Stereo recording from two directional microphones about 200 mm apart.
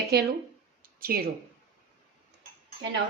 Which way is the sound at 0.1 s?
55° right (ahead or behind).